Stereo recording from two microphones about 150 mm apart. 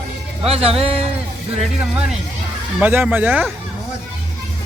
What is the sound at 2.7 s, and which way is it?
Speech, 10° right (ahead or behind).